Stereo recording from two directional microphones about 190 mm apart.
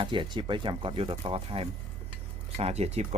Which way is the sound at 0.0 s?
25° right (ahead or behind).